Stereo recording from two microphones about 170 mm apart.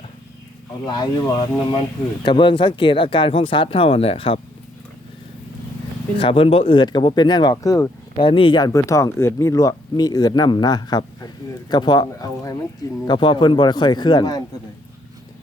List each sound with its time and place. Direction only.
0.9 s speech: 25° left (ahead or behind)
6.1 s speech: 30° left (ahead or behind)
8.1 s speech: 30° left (ahead or behind)